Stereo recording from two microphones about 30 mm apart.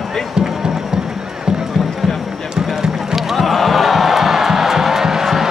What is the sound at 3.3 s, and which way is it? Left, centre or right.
Music, centre.